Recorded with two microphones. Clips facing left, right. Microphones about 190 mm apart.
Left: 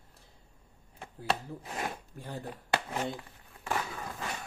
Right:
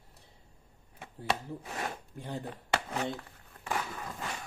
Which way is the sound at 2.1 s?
15° right (ahead or behind).